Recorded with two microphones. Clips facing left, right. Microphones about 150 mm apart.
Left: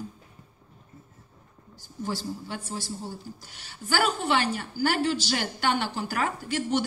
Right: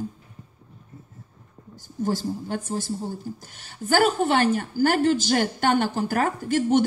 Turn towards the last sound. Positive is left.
turn(degrees=-45)  # may be behind; listen again after turning